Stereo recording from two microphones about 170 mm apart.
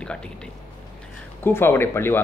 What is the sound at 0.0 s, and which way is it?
Speech, 5° left (ahead or behind).